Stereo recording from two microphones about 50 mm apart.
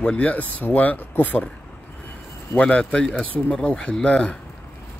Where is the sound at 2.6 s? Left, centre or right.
Centre.